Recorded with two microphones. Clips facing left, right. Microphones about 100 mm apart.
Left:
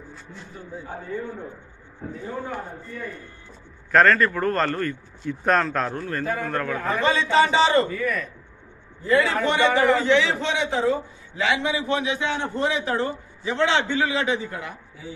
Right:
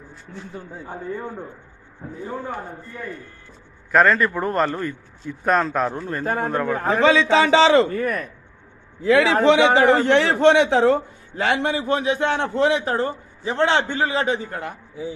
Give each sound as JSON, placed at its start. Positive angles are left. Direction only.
{"t": 3.9, "sound": "a man's voice", "side_deg": -10}
{"t": 6.9, "sound": "a man's voice", "side_deg": -90}
{"t": 7.9, "sound": "a man's voice", "side_deg": -50}
{"t": 9.0, "sound": "a man's voice", "side_deg": -90}
{"t": 11.3, "sound": "a man's voice", "side_deg": -50}
{"t": 12.4, "sound": "a man's voice", "side_deg": -85}
{"t": 12.8, "sound": "a man's voice", "side_deg": -40}